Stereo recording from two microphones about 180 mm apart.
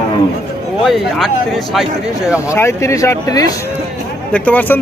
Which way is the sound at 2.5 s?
15° left (ahead or behind).